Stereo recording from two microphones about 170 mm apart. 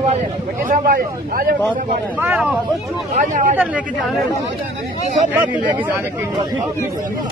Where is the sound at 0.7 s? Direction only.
60° right (ahead or behind).